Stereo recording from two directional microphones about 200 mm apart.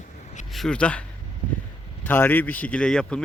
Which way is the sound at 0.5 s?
5° left (ahead or behind).